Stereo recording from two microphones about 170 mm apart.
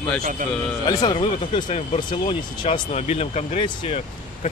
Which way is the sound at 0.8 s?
25° left (ahead or behind).